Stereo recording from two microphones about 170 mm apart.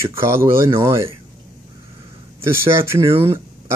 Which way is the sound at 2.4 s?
15° right (ahead or behind).